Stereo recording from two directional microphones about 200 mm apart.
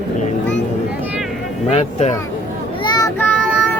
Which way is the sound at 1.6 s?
30° left (ahead or behind).